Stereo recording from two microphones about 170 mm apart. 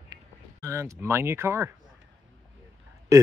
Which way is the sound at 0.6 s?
15° right (ahead or behind).